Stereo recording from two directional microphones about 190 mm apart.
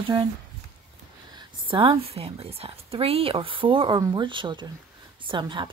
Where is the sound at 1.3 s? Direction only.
25° right (ahead or behind).